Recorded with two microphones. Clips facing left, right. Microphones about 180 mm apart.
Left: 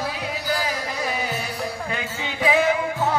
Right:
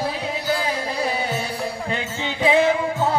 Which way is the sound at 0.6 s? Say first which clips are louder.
Right 3 dB; 30° right (ahead or behind).